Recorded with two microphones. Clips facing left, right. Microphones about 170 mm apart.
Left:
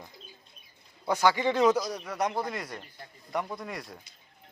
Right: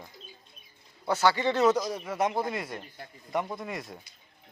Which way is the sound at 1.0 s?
15° left (ahead or behind).